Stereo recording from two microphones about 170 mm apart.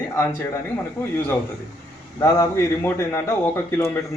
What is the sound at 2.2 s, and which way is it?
A man's voice, 15° left (ahead or behind).